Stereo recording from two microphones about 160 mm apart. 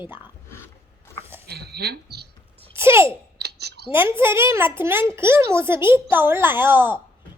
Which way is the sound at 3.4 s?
90° right.